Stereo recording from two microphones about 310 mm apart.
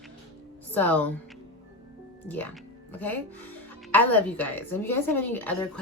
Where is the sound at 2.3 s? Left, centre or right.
Centre.